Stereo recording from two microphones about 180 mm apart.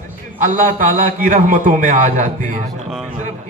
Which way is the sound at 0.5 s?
50° right (ahead or behind).